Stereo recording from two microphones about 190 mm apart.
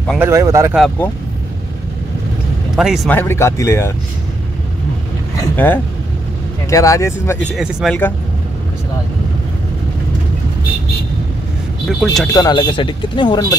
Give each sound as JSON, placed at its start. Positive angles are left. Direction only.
{"t": 0.2, "sound": "speech", "side_deg": -15}
{"t": 0.7, "sound": "speech", "side_deg": 5}
{"t": 2.7, "sound": "speech", "side_deg": 0}
{"t": 3.1, "sound": "speech", "side_deg": 10}
{"t": 5.6, "sound": "speech", "side_deg": 10}
{"t": 7.5, "sound": "speech", "side_deg": 0}
{"t": 11.9, "sound": "speech", "side_deg": 0}
{"t": 12.3, "sound": "speech", "side_deg": 20}